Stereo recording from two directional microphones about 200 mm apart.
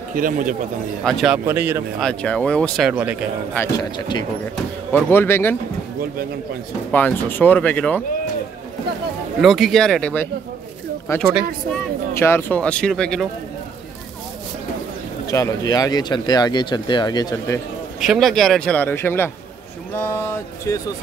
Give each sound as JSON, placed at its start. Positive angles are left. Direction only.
{"t": 0.1, "sound": "speech", "side_deg": -40}
{"t": 1.0, "sound": "speech", "side_deg": 0}
{"t": 2.0, "sound": "speech", "side_deg": 5}
{"t": 2.9, "sound": "speech", "side_deg": -10}
{"t": 3.5, "sound": "speech", "side_deg": 15}
{"t": 4.9, "sound": "speech", "side_deg": 10}
{"t": 6.9, "sound": "speech", "side_deg": 10}
{"t": 9.4, "sound": "speech", "side_deg": 0}
{"t": 11.7, "sound": "speech", "side_deg": 10}
{"t": 15.2, "sound": "speech", "side_deg": 15}
{"t": 18.0, "sound": "speech", "side_deg": 0}